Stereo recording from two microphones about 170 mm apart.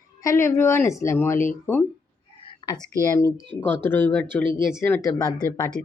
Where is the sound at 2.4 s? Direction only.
25° left (ahead or behind); by 4.4 s 10° left (ahead or behind).